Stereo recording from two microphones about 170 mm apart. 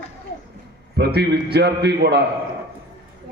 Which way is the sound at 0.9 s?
75° right (ahead or behind).